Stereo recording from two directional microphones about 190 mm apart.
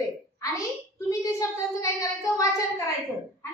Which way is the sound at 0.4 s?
15° left (ahead or behind).